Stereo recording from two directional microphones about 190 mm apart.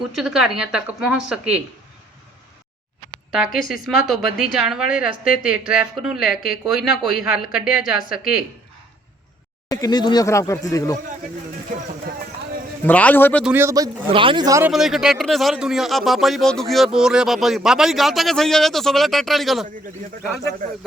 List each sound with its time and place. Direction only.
0.2 s a man's voice: 5° right (ahead or behind)
3.3 s a man's voice: centre (ahead or behind)
9.6 s speech: 20° left (ahead or behind)
12.8 s speech: 10° left (ahead or behind)
13.4 s a man's voice: 10° right (ahead or behind)
14.6 s a man's voice: centre (ahead or behind)